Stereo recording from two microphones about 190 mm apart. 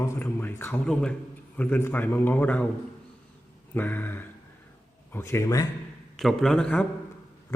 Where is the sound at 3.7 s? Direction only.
10° left (ahead or behind).